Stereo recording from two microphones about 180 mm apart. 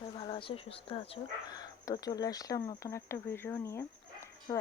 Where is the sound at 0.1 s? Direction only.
30° left (ahead or behind).